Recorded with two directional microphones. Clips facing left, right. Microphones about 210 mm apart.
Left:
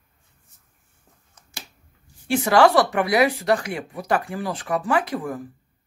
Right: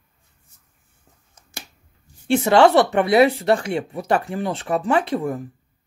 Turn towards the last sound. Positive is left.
turn(degrees=-25)  # may be behind; listen again after turning